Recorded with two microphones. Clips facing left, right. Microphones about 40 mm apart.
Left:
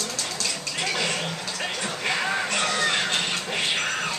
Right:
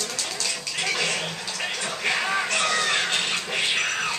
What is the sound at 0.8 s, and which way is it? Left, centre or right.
Music, centre.